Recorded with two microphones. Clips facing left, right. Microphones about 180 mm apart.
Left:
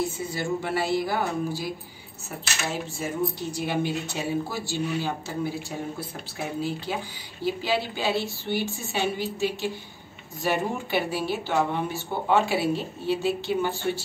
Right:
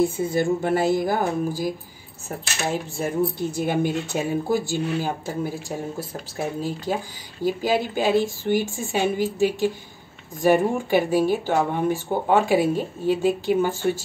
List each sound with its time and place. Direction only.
0.0 s cutlery: 50° right (ahead or behind)